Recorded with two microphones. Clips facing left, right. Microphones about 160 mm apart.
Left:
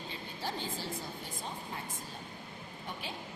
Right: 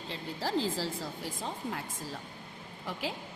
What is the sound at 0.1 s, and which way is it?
Speech, 90° right.